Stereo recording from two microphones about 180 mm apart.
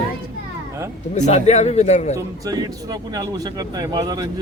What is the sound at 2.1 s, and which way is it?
Speech, 20° right (ahead or behind).